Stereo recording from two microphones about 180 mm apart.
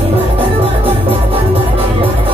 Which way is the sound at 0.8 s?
30° right (ahead or behind).